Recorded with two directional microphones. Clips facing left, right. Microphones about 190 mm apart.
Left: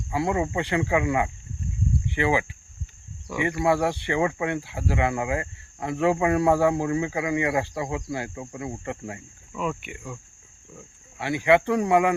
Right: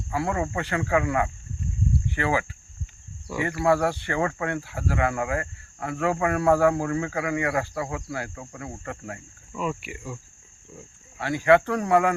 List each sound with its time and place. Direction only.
0.1 s speech: 15° left (ahead or behind)
3.6 s speech: 15° left (ahead or behind)
9.5 s speech: centre (ahead or behind)
11.2 s speech: 15° left (ahead or behind)